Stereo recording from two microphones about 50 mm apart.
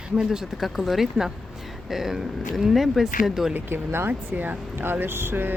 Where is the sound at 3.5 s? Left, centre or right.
Right.